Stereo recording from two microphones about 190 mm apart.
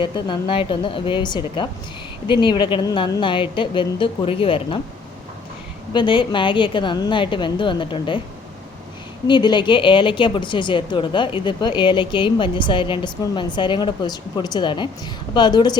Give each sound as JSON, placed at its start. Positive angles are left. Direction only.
{"t": 0.0, "sound": "speech", "side_deg": 25}
{"t": 5.9, "sound": "speech", "side_deg": 25}
{"t": 9.2, "sound": "speech", "side_deg": 25}